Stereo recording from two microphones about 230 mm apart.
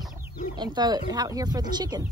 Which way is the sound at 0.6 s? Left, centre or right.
Centre.